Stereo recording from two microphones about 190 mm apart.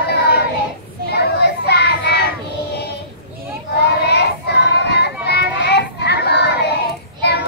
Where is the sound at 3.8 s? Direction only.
60° left (ahead or behind).